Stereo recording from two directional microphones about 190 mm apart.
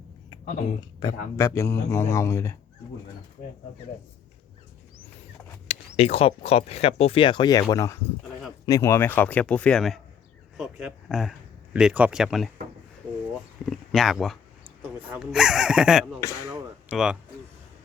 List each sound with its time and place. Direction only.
0.9 s speech: 20° left (ahead or behind)
5.6 s speech: 30° left (ahead or behind); by 12.5 s centre (ahead or behind)
13.7 s speech: centre (ahead or behind)